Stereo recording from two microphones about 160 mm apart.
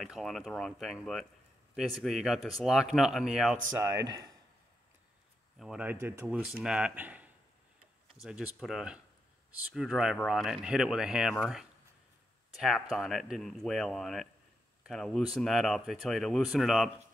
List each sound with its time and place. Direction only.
0.0 s speech: centre (ahead or behind)
3.7 s speech: 20° right (ahead or behind)
5.6 s speech: 5° right (ahead or behind)
12.5 s speech: centre (ahead or behind)